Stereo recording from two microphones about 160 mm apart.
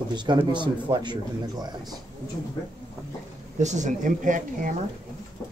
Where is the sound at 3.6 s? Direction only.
50° right (ahead or behind).